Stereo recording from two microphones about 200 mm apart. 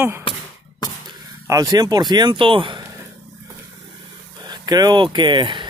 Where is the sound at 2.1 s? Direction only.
20° right (ahead or behind).